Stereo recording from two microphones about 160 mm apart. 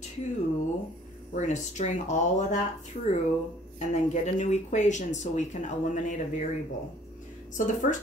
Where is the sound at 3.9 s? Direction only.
45° left (ahead or behind).